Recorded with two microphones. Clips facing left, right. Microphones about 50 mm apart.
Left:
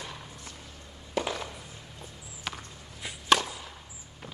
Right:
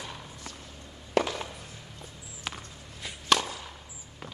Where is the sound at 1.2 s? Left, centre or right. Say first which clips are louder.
Right 5 dB; right.